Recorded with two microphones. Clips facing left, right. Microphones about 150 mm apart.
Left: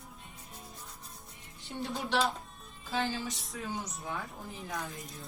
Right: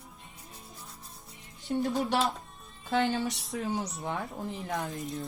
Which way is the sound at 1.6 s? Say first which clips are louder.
Right 8 dB; 45° right (ahead or behind).